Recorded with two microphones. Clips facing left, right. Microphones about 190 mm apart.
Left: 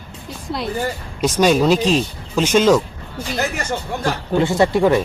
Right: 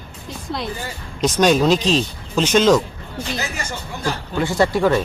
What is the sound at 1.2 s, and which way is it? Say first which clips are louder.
Speech: left 1 dB; 10° left (ahead or behind).